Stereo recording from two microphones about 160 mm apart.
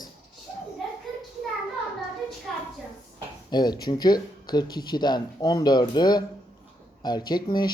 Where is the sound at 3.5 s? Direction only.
25° left (ahead or behind).